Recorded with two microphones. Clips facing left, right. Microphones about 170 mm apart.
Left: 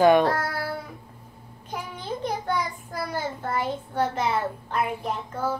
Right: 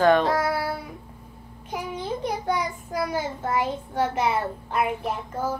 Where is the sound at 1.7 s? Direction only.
15° right (ahead or behind).